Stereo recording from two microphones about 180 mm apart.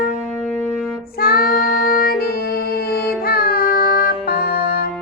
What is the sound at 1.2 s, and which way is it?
Music, 55° left (ahead or behind).